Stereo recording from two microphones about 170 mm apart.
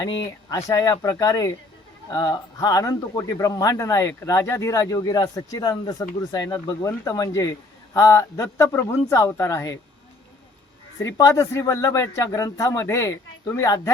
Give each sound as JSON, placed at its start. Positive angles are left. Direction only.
{"t": 0.5, "sound": "speech", "side_deg": 20}
{"t": 11.0, "sound": "speech", "side_deg": 20}